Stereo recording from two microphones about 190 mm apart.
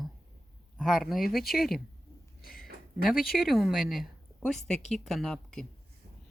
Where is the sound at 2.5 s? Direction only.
50° left (ahead or behind).